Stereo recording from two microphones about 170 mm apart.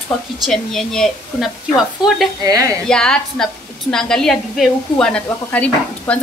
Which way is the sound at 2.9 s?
5° left (ahead or behind).